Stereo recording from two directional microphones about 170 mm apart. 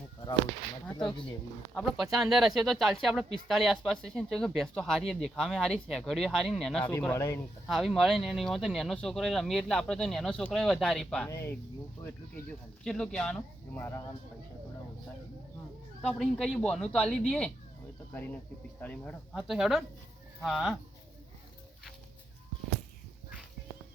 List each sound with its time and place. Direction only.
0.9 s speech: 25° left (ahead or behind)
1.7 s speech: centre (ahead or behind)
7.0 s speech: 15° left (ahead or behind)
7.7 s speech: centre (ahead or behind)
11.3 s speech: 15° left (ahead or behind)
12.8 s speech: 5° left (ahead or behind)
16.0 s speech: 5° left (ahead or behind)
18.8 s speech: 10° left (ahead or behind)